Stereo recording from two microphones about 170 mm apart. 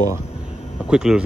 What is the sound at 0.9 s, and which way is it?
Speech, 5° right (ahead or behind).